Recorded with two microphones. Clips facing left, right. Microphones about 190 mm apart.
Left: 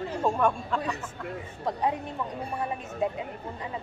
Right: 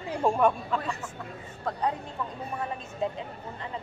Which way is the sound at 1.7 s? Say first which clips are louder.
Left 1 dB; 15° left (ahead or behind).